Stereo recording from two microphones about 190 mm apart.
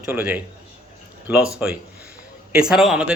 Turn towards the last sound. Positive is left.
turn(degrees=-5)  # may be behind; listen again after turning